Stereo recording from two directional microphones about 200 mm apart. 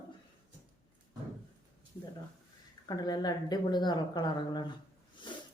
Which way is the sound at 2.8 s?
20° left (ahead or behind).